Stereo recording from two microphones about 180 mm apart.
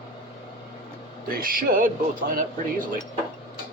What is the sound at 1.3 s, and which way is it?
A man's voice, 55° right (ahead or behind).